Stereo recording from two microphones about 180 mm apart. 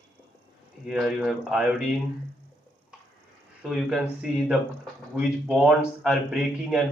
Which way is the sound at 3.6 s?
5° right (ahead or behind).